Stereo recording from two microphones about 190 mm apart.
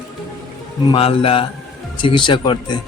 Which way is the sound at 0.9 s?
30° left (ahead or behind).